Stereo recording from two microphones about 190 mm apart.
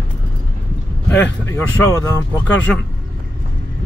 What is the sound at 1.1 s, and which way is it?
Speech, 10° left (ahead or behind).